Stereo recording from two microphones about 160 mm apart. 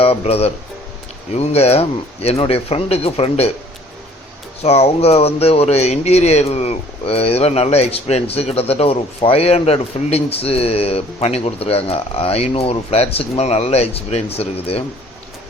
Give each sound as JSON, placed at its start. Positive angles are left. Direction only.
{"t": 0.0, "sound": "speech", "side_deg": 40}
{"t": 4.6, "sound": "speech", "side_deg": 40}